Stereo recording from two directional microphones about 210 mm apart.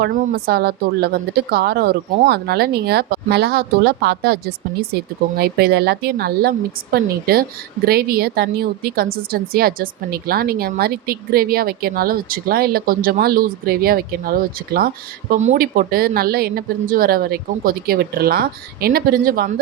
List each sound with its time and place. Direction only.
0.0 s a woman's voice: 50° right (ahead or behind)